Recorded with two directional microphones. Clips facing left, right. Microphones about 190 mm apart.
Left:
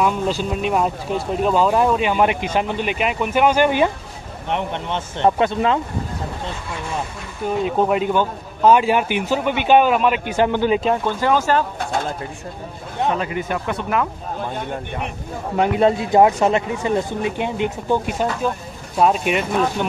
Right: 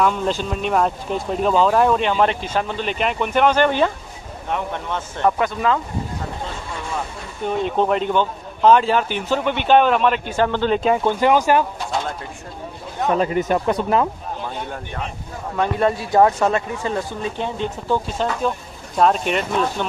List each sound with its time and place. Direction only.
0.0 s speech: 5° left (ahead or behind)
4.6 s speech: 25° left (ahead or behind)
7.4 s speech: 5° left (ahead or behind)
11.1 s speech: 15° right (ahead or behind)
13.2 s speech: 40° right (ahead or behind)
15.5 s speech: 20° left (ahead or behind)